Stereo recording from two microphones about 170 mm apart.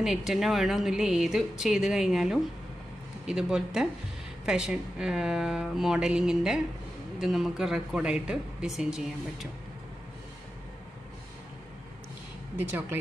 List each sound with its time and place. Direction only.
0.0 s speech: centre (ahead or behind)
12.5 s speech: 10° right (ahead or behind)